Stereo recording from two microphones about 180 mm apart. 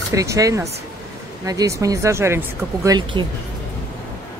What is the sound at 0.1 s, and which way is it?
Speech, 20° right (ahead or behind).